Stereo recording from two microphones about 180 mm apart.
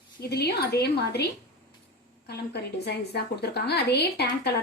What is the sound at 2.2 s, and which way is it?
A woman's voice, 65° left (ahead or behind).